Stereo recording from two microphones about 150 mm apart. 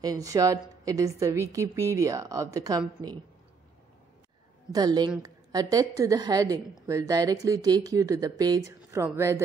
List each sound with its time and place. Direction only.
0.0 s a woman's voice: 25° right (ahead or behind)
4.7 s a woman's voice: 25° right (ahead or behind)